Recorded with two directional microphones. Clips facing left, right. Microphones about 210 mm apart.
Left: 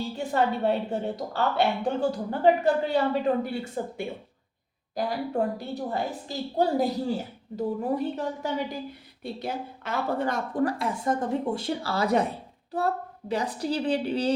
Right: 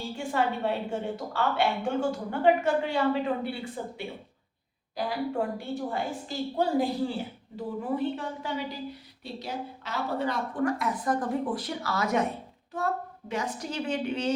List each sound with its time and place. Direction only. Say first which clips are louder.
0.2 s a woman's voice: left 3 dB; 40° left (ahead or behind)